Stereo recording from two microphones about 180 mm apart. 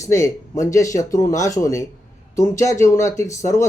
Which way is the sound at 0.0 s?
15° left (ahead or behind).